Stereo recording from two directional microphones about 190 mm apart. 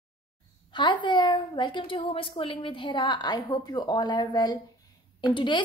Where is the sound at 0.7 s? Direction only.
25° left (ahead or behind).